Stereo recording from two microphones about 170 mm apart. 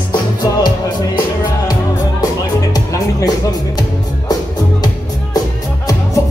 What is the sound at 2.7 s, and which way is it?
Music, 20° left (ahead or behind).